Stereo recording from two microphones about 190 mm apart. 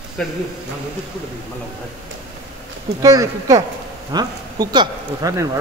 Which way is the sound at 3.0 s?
20° right (ahead or behind).